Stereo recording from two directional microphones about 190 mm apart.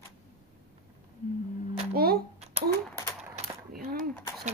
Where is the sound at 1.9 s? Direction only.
55° right (ahead or behind).